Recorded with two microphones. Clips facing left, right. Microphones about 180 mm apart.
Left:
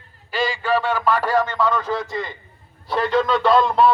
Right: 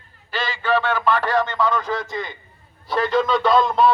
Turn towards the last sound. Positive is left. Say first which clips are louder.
# left 1 dB
turn(degrees=5)  # may be behind; listen again after turning